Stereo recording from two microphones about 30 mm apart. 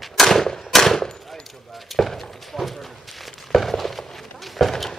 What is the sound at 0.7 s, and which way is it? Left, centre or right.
Gunshot, centre.